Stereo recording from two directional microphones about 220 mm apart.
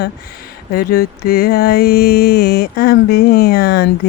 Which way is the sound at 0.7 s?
40° left (ahead or behind).